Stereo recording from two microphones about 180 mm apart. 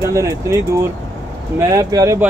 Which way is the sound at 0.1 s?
15° right (ahead or behind).